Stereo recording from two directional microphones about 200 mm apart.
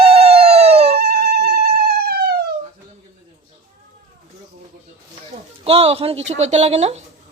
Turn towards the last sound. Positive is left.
turn(degrees=-35)  # may be behind; listen again after turning